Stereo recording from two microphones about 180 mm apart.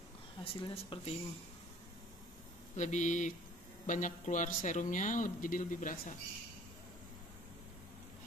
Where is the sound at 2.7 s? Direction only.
40° left (ahead or behind).